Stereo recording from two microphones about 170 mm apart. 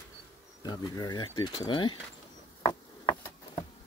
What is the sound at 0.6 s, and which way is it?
Speech, 25° left (ahead or behind).